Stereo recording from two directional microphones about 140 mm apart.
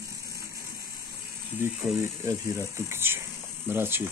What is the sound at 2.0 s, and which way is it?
Speech, 20° right (ahead or behind).